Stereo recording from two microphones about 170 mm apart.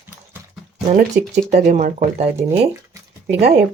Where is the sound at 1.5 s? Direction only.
45° right (ahead or behind).